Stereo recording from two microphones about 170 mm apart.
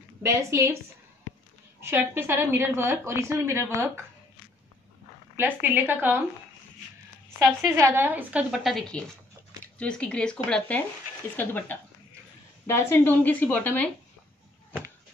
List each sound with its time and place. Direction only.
0.2 s a woman's voice: 15° right (ahead or behind)
1.8 s a woman's voice: 15° right (ahead or behind)
5.3 s a woman's voice: 10° right (ahead or behind)
7.3 s a woman's voice: 20° right (ahead or behind); by 13.8 s 10° left (ahead or behind)